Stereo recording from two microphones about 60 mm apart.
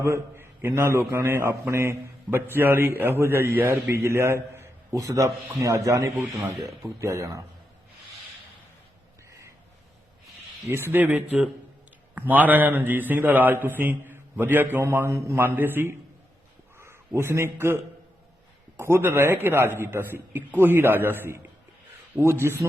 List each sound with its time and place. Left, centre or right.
0.0 s a man's voice: right
4.0 s a sound: right
4.9 s speech: right
5.5 s chopping: right
6.5 s speech: centre
7.0 s speech: right
10.7 s a man's voice: right
10.9 s a man's voice: right
17.2 s a man's voice: right
18.8 s a man's voice: right